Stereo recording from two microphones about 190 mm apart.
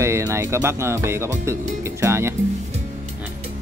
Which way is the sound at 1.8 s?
15° right (ahead or behind).